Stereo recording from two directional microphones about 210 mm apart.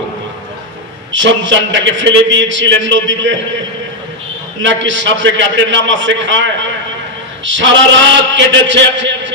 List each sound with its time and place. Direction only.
1.1 s a man's voice: 65° right (ahead or behind)
4.6 s a man's voice: 60° right (ahead or behind)